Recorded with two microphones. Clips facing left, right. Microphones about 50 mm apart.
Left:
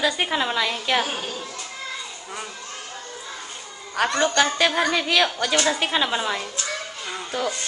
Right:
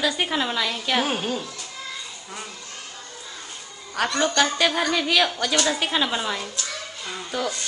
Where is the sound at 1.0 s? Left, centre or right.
Centre.